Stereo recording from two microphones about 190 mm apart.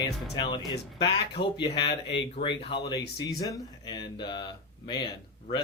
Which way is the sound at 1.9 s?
65° left (ahead or behind).